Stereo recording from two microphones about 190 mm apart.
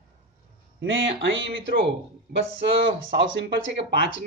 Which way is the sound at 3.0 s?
60° right (ahead or behind).